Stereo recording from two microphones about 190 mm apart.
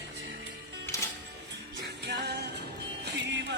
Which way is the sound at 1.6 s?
60° right (ahead or behind).